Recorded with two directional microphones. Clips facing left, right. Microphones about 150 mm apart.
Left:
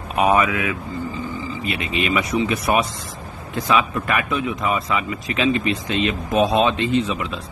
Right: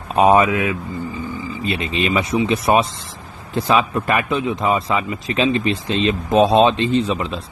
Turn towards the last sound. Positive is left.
turn(degrees=-35)  # may be behind; listen again after turning